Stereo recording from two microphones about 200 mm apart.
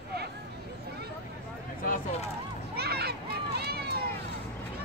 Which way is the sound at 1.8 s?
40° left (ahead or behind).